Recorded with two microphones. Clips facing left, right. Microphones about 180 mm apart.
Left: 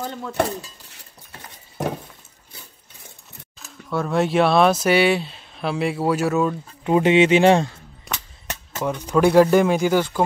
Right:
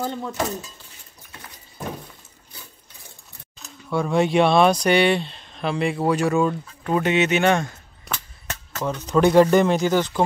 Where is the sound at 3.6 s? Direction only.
Centre (ahead or behind).